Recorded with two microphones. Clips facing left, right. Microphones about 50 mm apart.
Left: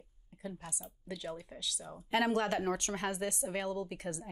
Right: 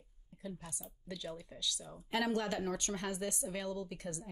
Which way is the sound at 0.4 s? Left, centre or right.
Left.